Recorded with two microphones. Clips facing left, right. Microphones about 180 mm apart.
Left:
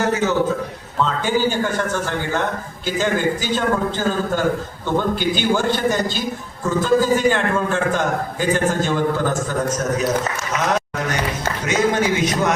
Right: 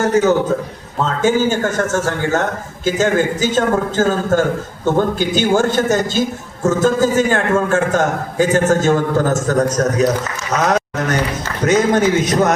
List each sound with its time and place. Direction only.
0.0 s a man's voice: 40° right (ahead or behind)